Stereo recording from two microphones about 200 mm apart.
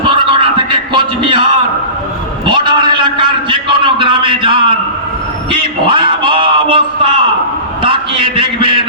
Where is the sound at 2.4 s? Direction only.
25° right (ahead or behind).